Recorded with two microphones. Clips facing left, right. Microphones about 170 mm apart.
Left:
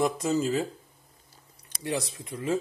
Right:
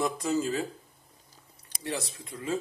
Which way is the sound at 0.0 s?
20° left (ahead or behind).